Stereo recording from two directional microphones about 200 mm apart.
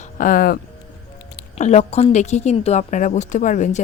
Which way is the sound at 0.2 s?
45° left (ahead or behind).